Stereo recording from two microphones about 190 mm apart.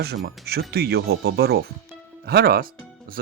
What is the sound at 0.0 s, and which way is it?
Speech, 55° right (ahead or behind).